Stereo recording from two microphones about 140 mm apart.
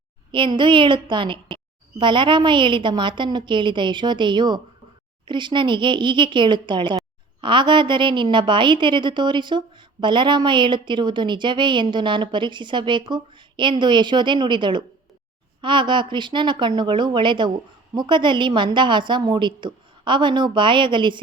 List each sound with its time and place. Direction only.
0.3 s a woman's voice: 35° right (ahead or behind)